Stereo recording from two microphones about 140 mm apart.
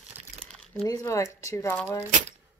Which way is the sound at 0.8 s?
25° left (ahead or behind).